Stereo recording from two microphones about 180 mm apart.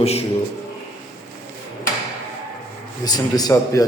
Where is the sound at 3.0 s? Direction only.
20° left (ahead or behind).